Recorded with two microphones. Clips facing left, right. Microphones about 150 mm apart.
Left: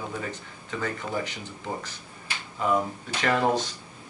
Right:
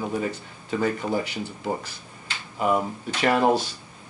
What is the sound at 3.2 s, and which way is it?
Speech, 20° right (ahead or behind).